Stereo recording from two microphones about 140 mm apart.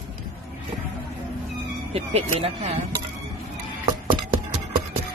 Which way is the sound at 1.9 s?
45° right (ahead or behind).